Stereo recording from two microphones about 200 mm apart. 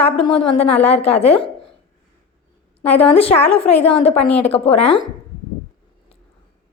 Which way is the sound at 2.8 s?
30° left (ahead or behind).